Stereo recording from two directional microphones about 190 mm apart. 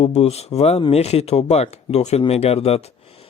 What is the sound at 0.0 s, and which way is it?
Speech, 30° left (ahead or behind).